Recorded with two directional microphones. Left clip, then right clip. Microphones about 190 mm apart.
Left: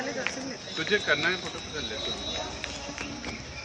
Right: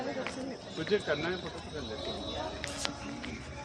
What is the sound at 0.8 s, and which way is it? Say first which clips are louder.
Speech: left 6 dB; 20° right (ahead or behind).